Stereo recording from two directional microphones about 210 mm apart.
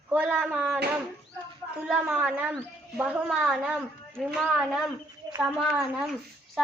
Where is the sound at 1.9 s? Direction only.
5° right (ahead or behind).